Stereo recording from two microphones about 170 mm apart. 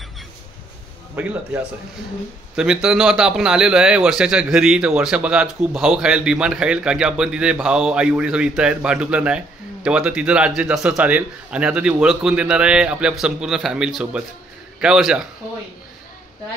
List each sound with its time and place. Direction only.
1.2 s speech: 5° right (ahead or behind)
2.5 s a man's voice: 5° right (ahead or behind)